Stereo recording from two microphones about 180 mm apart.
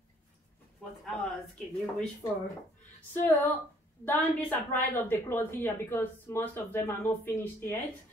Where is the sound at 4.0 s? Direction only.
10° left (ahead or behind).